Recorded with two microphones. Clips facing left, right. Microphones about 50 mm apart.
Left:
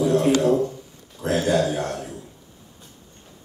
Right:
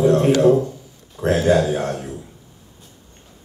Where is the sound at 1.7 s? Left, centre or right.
Right.